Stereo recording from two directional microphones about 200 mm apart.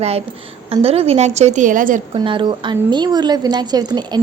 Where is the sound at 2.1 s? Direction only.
25° right (ahead or behind).